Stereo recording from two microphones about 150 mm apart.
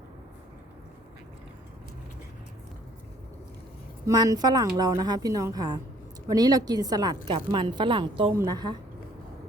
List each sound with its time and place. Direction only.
4.0 s a woman's voice: 25° right (ahead or behind)